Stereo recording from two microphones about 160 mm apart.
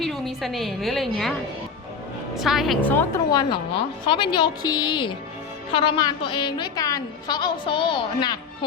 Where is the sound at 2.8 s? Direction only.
10° left (ahead or behind).